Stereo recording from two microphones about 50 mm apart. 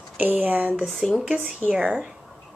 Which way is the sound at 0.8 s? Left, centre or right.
Centre.